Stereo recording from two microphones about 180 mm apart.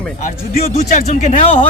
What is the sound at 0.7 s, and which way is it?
Speech, 40° left (ahead or behind).